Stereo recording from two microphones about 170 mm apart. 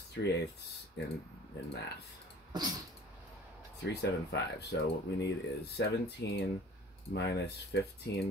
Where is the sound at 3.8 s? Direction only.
80° left.